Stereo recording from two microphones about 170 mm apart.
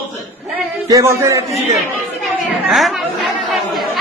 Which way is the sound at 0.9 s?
15° right (ahead or behind).